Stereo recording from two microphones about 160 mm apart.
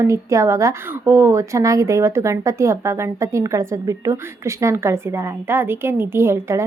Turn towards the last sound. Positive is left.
turn(degrees=-15)  # may be behind; listen again after turning